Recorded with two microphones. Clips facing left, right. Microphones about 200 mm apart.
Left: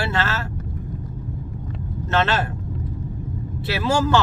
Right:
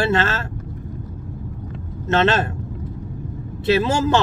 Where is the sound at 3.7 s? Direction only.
20° right (ahead or behind).